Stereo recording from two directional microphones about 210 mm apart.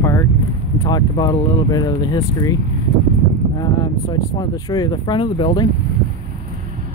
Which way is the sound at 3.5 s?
20° left (ahead or behind).